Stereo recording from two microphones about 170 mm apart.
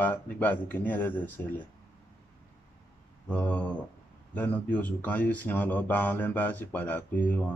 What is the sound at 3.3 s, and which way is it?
Speech, 10° left (ahead or behind).